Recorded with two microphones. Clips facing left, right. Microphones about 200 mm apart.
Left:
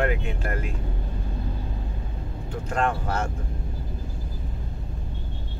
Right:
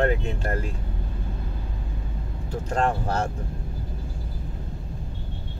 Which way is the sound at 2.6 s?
30° right (ahead or behind).